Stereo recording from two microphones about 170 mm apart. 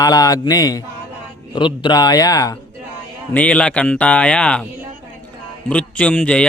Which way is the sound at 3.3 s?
5° left (ahead or behind).